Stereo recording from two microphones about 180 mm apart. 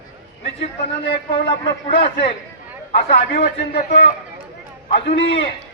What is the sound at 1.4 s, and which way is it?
Speech, 30° left (ahead or behind).